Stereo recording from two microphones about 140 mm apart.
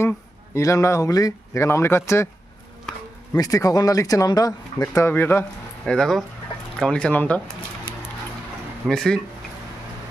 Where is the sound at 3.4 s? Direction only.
25° left (ahead or behind).